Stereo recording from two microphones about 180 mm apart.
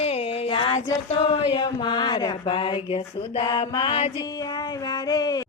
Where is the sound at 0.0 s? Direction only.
35° left (ahead or behind).